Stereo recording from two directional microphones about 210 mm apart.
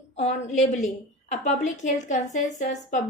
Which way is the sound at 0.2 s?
35° left (ahead or behind).